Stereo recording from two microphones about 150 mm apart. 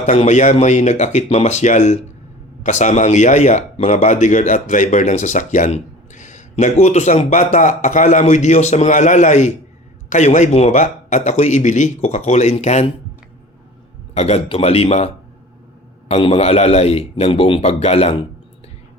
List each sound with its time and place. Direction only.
0.0 s speech: 50° left (ahead or behind)
14.1 s speech: 45° left (ahead or behind)